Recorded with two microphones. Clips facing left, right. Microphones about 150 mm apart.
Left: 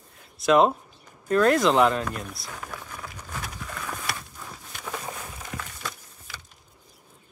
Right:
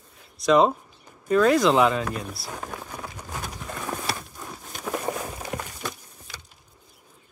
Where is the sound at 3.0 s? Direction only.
25° right (ahead or behind).